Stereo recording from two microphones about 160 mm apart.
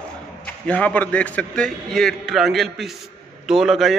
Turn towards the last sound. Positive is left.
turn(degrees=0)  # may be behind; listen again after turning